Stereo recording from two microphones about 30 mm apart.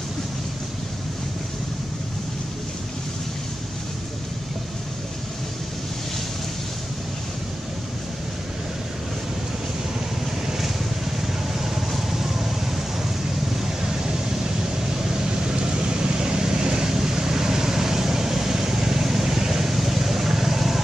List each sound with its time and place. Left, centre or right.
12.1 s vehicle: centre
13.8 s vehicle: right